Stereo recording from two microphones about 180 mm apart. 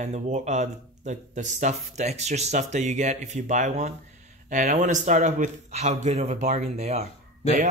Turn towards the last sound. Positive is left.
turn(degrees=-45)  # may be behind; listen again after turning